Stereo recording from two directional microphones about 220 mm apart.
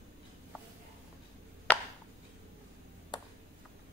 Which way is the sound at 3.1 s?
20° left (ahead or behind).